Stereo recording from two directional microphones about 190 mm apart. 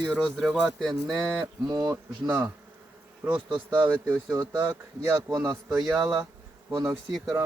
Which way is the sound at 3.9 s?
10° right (ahead or behind).